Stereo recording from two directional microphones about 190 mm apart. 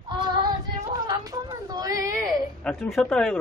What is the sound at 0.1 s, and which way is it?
Child singing, 25° right (ahead or behind).